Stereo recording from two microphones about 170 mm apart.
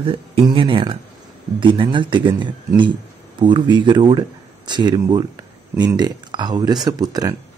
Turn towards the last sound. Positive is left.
turn(degrees=-20)  # may be behind; listen again after turning